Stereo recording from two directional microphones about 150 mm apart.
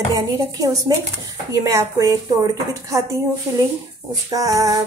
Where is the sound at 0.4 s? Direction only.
25° right (ahead or behind).